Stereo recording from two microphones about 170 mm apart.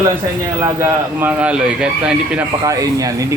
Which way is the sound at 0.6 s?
15° right (ahead or behind).